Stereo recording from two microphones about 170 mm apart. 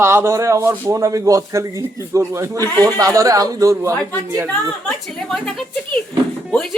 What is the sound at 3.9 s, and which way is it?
A woman's voice, 10° left (ahead or behind).